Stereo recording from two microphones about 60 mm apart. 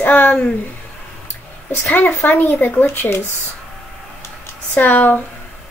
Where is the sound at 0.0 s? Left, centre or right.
Left.